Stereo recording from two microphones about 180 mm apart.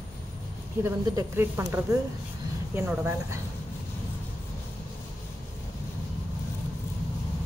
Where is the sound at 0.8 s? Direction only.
15° right (ahead or behind).